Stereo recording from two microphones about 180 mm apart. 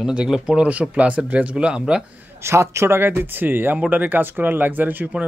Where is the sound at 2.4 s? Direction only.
15° right (ahead or behind).